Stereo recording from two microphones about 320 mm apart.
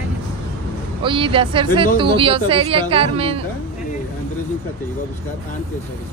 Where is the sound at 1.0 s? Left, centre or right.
Centre.